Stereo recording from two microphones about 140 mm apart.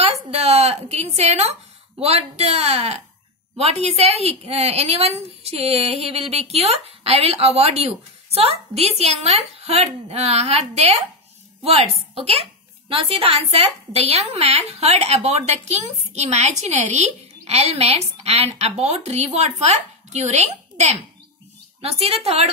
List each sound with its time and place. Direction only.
0.0 s a woman's voice: 45° right (ahead or behind)